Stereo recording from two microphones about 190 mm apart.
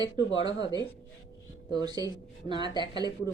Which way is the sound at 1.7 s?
20° right (ahead or behind).